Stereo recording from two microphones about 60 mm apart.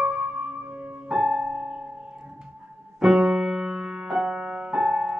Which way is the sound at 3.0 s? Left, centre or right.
Centre.